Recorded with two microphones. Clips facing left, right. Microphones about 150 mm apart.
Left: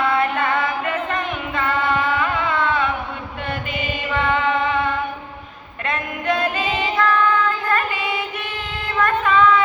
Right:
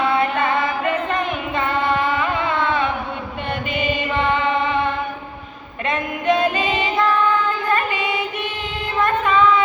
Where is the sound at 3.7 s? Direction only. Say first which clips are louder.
Right 4 dB; 5° left (ahead or behind).